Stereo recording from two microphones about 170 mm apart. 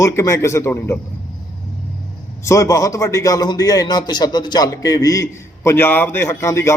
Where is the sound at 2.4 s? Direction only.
20° left (ahead or behind).